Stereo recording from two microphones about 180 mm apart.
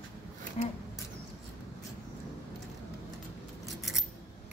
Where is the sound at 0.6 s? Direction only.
40° left (ahead or behind).